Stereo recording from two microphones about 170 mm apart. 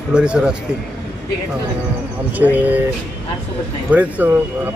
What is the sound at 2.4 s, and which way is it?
Speech, 10° right (ahead or behind).